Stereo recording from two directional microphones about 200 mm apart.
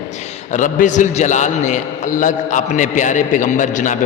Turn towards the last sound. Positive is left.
turn(degrees=40)  # may be behind; listen again after turning